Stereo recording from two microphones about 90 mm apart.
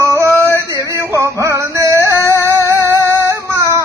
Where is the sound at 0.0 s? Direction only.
35° right (ahead or behind).